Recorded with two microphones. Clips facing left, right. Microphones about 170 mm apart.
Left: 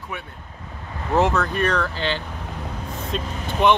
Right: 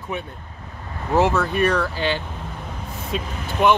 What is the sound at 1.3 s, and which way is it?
Speech, 10° right (ahead or behind).